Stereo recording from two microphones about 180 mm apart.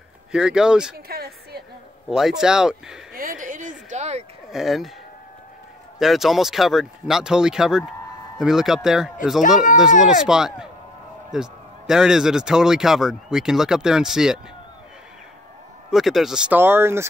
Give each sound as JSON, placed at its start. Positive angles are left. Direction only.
{"t": 0.3, "sound": "speech", "side_deg": -5}
{"t": 0.9, "sound": "a woman's voice", "side_deg": -60}
{"t": 2.0, "sound": "speech", "side_deg": 0}
{"t": 3.1, "sound": "a sound", "side_deg": -50}
{"t": 4.5, "sound": "speech", "side_deg": 0}
{"t": 5.9, "sound": "speech", "side_deg": 0}
{"t": 15.9, "sound": "speech", "side_deg": 0}